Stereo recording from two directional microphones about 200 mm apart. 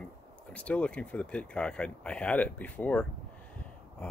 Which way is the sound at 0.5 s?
5° left (ahead or behind).